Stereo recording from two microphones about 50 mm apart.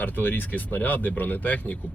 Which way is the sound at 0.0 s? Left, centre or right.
Left.